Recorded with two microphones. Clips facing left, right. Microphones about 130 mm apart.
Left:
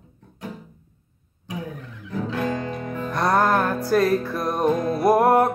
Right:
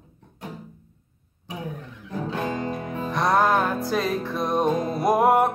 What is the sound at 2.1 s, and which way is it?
Music, 25° right (ahead or behind).